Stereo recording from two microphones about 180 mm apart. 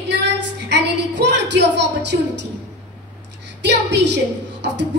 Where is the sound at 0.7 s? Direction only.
70° right (ahead or behind).